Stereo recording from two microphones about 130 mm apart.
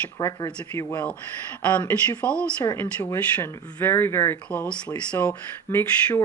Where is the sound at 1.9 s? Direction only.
10° left (ahead or behind).